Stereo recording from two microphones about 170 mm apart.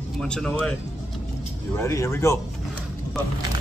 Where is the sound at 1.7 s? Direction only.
15° left (ahead or behind).